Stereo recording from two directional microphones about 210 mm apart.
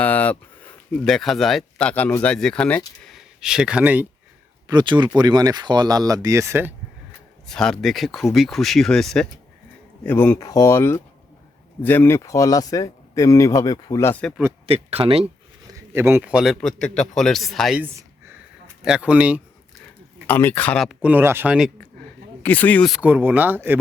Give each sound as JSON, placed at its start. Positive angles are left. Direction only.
{"t": 0.0, "sound": "a sound", "side_deg": 5}
{"t": 0.9, "sound": "speech", "side_deg": 0}
{"t": 4.7, "sound": "speech", "side_deg": -20}
{"t": 7.4, "sound": "speech", "side_deg": 5}
{"t": 14.7, "sound": "speech", "side_deg": -25}
{"t": 15.9, "sound": "speech", "side_deg": -10}
{"t": 20.2, "sound": "speech", "side_deg": 10}
{"t": 22.4, "sound": "speech", "side_deg": 10}